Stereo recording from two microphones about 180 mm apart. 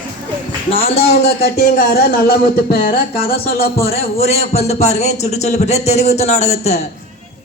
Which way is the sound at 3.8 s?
35° left (ahead or behind).